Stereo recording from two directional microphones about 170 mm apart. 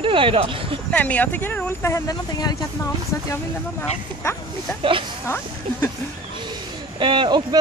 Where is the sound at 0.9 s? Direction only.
10° left (ahead or behind).